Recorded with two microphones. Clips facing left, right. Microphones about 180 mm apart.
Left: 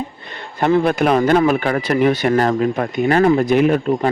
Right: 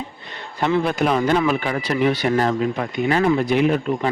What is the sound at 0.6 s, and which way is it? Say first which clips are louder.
Speech: left 4 dB; 55° left (ahead or behind).